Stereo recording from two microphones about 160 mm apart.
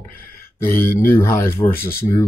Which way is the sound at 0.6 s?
15° left (ahead or behind).